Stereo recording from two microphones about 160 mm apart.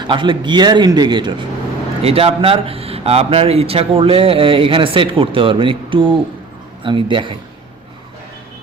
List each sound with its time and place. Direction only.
0.0 s a man's voice: 30° right (ahead or behind)
2.0 s a man's voice: 40° right (ahead or behind)